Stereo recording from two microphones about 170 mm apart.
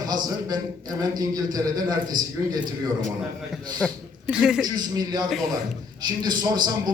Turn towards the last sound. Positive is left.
turn(degrees=-25)  # may be behind; listen again after turning